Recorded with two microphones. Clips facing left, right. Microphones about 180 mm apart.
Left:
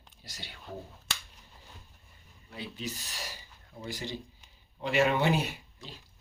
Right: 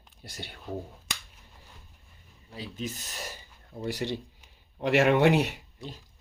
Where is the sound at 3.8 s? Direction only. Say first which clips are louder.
Right 7 dB; 70° right (ahead or behind).